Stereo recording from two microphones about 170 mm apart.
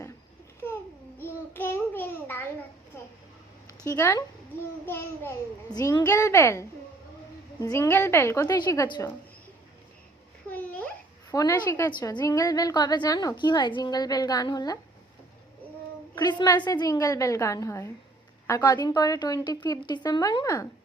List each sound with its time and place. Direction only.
0.6 s babbling: 10° left (ahead or behind)
1.2 s child singing: 15° left (ahead or behind)
3.8 s a woman's voice: 15° left (ahead or behind)
5.7 s a woman's voice: 20° left (ahead or behind)
10.5 s babbling: 10° left (ahead or behind)
11.3 s a woman's voice: 20° left (ahead or behind)
16.1 s a woman's voice: 20° left (ahead or behind)